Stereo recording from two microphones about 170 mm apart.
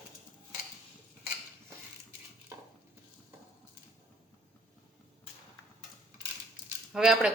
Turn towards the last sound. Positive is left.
turn(degrees=-5)  # may be behind; listen again after turning